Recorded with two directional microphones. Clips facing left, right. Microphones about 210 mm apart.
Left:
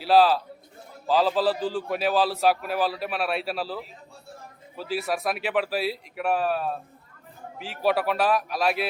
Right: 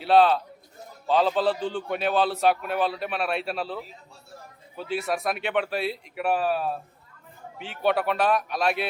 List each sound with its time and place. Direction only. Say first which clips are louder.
0.0 s a man's voice: even; centre (ahead or behind)